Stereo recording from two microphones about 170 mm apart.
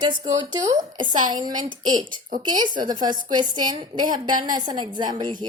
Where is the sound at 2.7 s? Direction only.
50° right (ahead or behind).